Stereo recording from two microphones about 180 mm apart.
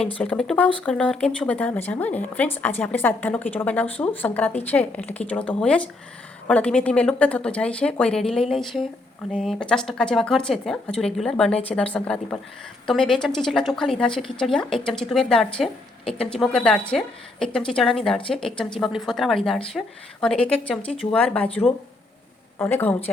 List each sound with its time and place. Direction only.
0.2 s speech: 5° left (ahead or behind)
21.1 s speech: 5° left (ahead or behind)